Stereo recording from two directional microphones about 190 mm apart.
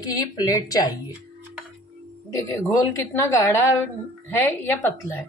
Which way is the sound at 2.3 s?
15° left (ahead or behind).